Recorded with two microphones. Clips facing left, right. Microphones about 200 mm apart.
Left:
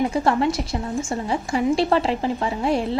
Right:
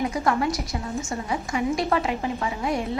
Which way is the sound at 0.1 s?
30° left (ahead or behind).